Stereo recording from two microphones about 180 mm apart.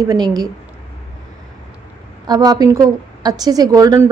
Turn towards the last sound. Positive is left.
turn(degrees=-20)  # may be behind; listen again after turning